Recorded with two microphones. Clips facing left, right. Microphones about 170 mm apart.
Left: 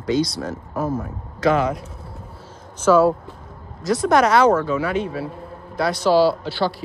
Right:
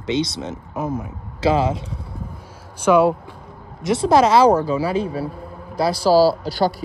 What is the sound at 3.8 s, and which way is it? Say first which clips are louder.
A man's voice: right 2 dB; 25° right (ahead or behind).